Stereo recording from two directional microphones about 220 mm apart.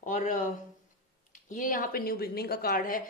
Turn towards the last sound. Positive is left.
turn(degrees=40)  # may be behind; listen again after turning